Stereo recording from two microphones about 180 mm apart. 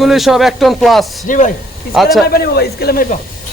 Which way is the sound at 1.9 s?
Centre (ahead or behind).